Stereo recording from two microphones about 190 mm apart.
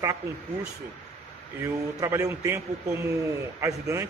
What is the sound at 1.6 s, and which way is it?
Speech, 15° right (ahead or behind).